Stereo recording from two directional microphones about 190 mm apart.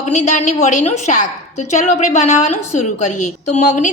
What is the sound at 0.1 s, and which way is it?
A woman's voice, 40° left (ahead or behind).